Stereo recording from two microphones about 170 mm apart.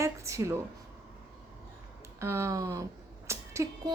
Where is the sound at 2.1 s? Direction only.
15° right (ahead or behind).